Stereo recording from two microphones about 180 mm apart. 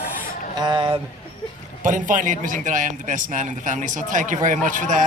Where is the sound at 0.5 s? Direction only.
25° right (ahead or behind).